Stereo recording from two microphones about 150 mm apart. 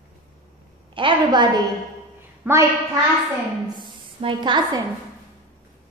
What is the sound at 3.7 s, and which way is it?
A woman's voice, 30° right (ahead or behind).